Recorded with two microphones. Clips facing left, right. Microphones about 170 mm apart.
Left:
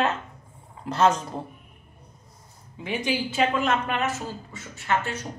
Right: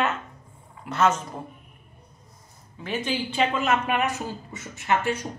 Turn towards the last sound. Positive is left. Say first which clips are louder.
# right 2 dB
turn(degrees=-15)  # may be behind; listen again after turning